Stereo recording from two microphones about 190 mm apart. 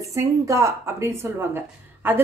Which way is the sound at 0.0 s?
15° right (ahead or behind).